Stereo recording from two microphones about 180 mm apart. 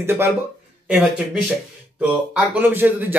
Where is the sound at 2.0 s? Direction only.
5° right (ahead or behind).